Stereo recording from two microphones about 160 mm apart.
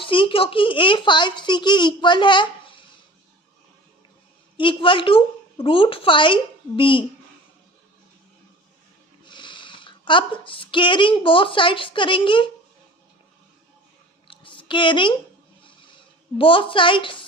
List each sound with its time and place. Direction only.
0.0 s a child's voice: 30° left (ahead or behind)
4.5 s a woman's voice: 30° left (ahead or behind)
9.2 s speech: 30° left (ahead or behind)
14.3 s a sound: 30° left (ahead or behind)
16.4 s a woman's voice: 35° left (ahead or behind)